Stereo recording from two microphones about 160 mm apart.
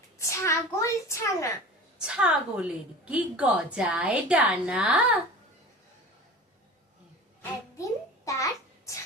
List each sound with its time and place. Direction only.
0.2 s a child's voice: 20° left (ahead or behind)
2.0 s a woman's voice: 5° right (ahead or behind)
7.8 s a sound: 20° left (ahead or behind)